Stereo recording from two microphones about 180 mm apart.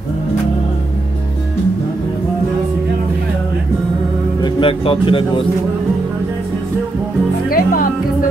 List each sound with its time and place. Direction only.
4.4 s speech: 30° left (ahead or behind)
7.4 s music: 50° left (ahead or behind)